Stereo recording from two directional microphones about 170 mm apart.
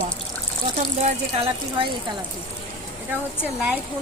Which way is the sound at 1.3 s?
30° right (ahead or behind).